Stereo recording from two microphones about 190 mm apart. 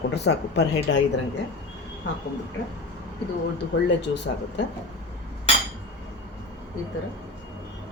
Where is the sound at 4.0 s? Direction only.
65° left (ahead or behind).